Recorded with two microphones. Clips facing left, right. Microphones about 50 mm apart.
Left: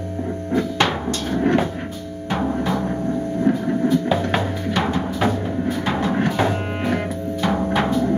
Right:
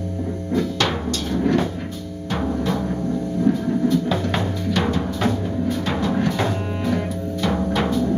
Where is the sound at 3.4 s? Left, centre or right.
Left.